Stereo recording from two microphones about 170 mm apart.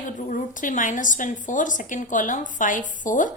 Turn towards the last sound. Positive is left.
turn(degrees=50)  # may be behind; listen again after turning